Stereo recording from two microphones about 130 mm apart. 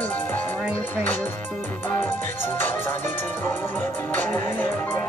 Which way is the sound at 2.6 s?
20° left (ahead or behind).